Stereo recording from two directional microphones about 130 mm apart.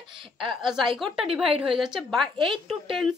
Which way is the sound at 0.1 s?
40° right (ahead or behind).